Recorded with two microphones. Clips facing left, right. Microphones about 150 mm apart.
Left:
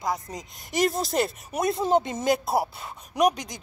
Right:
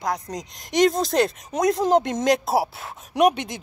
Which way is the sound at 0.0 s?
Centre (ahead or behind).